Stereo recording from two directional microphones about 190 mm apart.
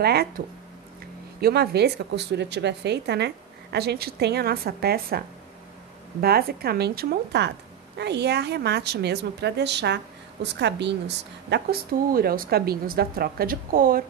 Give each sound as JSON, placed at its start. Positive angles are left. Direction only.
{"t": 0.0, "sound": "speech", "side_deg": -55}
{"t": 1.4, "sound": "speech", "side_deg": -60}
{"t": 6.2, "sound": "speech", "side_deg": -55}